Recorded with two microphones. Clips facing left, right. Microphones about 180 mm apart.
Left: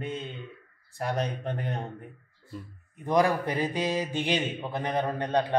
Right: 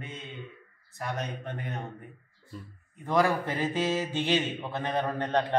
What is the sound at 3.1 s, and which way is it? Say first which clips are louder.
Mantra: left 2 dB; 15° left (ahead or behind).